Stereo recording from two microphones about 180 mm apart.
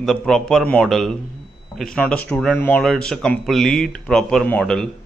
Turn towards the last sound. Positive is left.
turn(degrees=5)  # may be behind; listen again after turning